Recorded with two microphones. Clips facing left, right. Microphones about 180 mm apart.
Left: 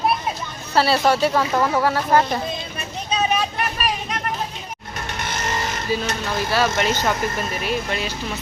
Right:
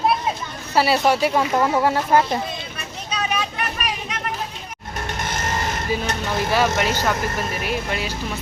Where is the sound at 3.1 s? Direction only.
25° left (ahead or behind).